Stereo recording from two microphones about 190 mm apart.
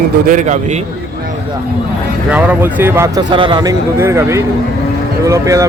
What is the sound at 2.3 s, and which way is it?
Speech, 10° right (ahead or behind).